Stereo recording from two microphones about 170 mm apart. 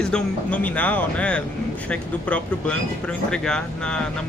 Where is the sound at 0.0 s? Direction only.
5° left (ahead or behind).